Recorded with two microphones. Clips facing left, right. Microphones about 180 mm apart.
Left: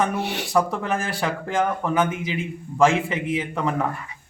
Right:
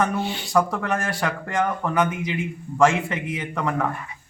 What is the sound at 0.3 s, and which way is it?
Speech, 70° left (ahead or behind).